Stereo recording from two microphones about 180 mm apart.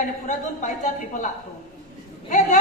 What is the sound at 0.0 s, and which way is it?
A woman's voice, 45° left (ahead or behind).